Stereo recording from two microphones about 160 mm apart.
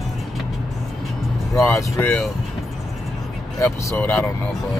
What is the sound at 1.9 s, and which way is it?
Speech, 10° left (ahead or behind).